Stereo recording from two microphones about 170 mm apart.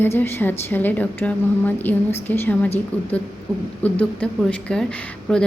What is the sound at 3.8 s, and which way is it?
A woman's voice, 10° left (ahead or behind).